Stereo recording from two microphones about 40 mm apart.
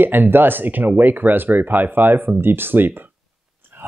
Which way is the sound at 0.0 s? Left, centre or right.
Right.